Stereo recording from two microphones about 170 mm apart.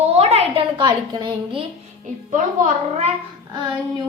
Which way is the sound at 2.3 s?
45° right (ahead or behind).